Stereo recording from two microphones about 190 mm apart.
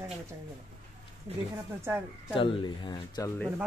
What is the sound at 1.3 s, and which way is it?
Speech, 30° right (ahead or behind).